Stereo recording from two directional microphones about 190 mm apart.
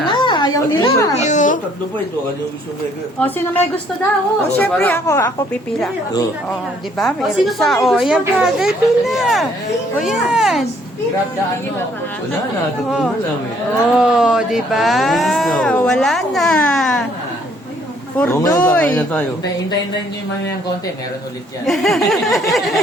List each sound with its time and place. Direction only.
0.0 s a sound: 25° left (ahead or behind)
1.1 s a child's voice: 40° left (ahead or behind)
3.2 s speech: 10° left (ahead or behind)
7.0 s speech: centre (ahead or behind)
13.9 s speech: 5° right (ahead or behind)
18.2 s speech: 15° left (ahead or behind)
21.7 s speech: centre (ahead or behind)